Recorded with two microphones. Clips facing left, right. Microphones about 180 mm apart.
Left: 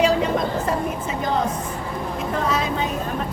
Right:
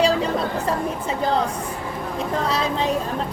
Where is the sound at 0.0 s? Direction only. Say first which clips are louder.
Left 1 dB; 35° right (ahead or behind).